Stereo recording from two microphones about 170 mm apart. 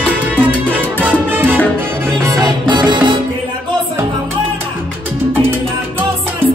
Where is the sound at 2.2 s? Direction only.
20° right (ahead or behind).